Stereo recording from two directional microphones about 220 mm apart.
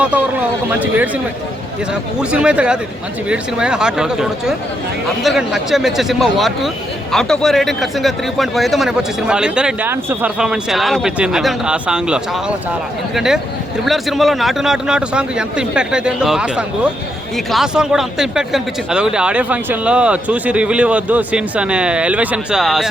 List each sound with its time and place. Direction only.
0.0 s a man's voice: 5° right (ahead or behind)